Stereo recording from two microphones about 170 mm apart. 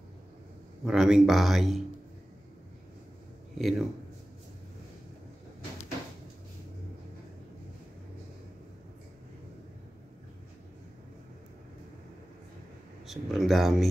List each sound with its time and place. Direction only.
0.8 s speech: 5° right (ahead or behind)
3.5 s speech: centre (ahead or behind)
13.0 s speech: centre (ahead or behind)